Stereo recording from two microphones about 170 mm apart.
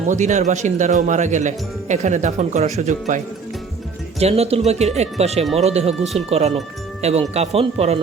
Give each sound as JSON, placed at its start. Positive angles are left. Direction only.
{"t": 0.1, "sound": "speech", "side_deg": -45}
{"t": 4.2, "sound": "speech", "side_deg": -40}